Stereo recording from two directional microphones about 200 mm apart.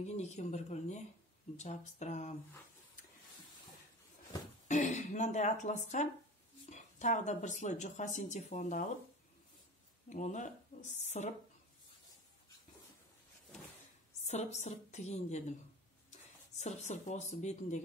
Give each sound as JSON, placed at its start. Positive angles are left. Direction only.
{"t": 0.0, "sound": "speech", "side_deg": 35}
{"t": 4.6, "sound": "speech", "side_deg": 35}
{"t": 10.0, "sound": "speech", "side_deg": 35}
{"t": 14.2, "sound": "speech", "side_deg": 35}